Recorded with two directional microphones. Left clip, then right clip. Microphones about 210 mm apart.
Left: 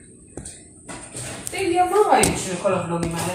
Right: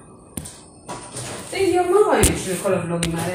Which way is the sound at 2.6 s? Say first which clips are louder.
Even; 40° right (ahead or behind).